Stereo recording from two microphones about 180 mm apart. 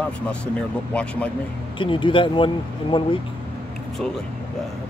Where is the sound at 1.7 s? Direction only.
30° left (ahead or behind).